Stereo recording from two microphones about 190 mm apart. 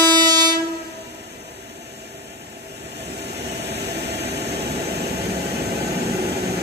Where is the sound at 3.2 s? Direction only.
60° right (ahead or behind).